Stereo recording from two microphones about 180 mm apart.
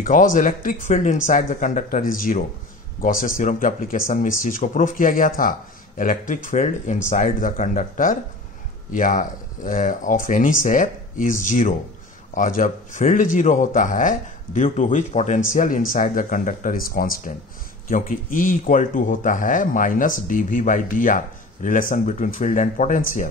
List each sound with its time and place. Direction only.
0.0 s speech: 45° left (ahead or behind)